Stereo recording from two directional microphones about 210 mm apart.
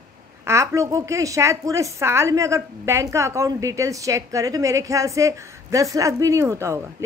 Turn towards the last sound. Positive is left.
turn(degrees=-15)  # may be behind; listen again after turning